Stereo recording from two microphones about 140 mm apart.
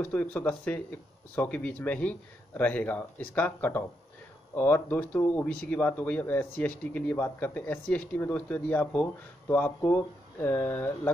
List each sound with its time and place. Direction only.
0.0 s a man's voice: 10° left (ahead or behind)